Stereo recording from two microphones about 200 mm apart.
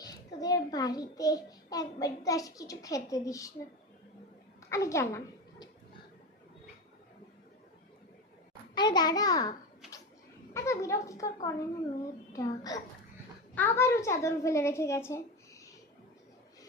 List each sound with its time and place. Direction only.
0.0 s a child's voice: 20° left (ahead or behind)
4.7 s a woman's voice: 15° left (ahead or behind)
8.7 s a child's voice: 20° left (ahead or behind)